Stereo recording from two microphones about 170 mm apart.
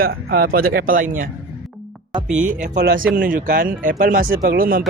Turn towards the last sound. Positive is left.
turn(degrees=-60)  # may be behind; listen again after turning